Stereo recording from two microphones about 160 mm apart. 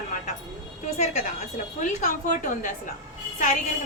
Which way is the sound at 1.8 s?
55° left (ahead or behind).